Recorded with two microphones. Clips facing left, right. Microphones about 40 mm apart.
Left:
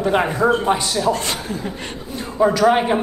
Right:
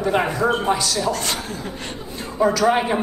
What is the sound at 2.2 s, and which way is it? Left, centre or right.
Speech, centre.